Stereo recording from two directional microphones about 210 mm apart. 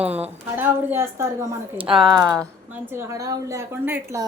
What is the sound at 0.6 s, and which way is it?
Speech, 10° right (ahead or behind).